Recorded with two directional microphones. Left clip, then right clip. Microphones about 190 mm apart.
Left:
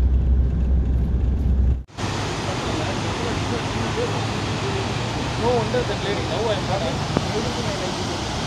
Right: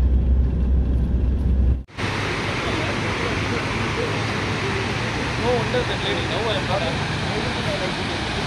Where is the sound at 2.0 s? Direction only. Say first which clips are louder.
Right 2 dB; 20° left (ahead or behind).